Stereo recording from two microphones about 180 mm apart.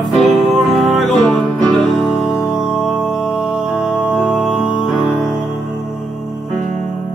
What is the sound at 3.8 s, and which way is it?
Music, 5° right (ahead or behind).